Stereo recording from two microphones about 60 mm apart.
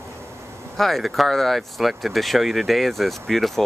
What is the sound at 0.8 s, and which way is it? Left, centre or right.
Speech, centre.